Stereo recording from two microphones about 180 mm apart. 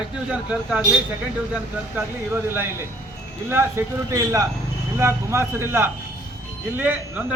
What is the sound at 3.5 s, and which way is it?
A man's voice, 15° right (ahead or behind).